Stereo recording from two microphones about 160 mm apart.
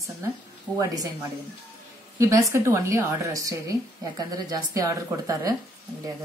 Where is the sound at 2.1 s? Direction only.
15° right (ahead or behind).